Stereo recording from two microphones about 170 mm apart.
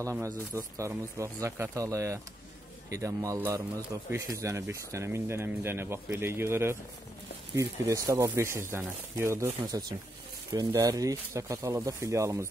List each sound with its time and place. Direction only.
0.0 s speech: 15° right (ahead or behind)